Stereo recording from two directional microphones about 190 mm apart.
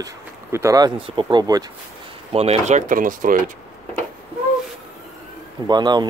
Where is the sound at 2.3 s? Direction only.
30° right (ahead or behind).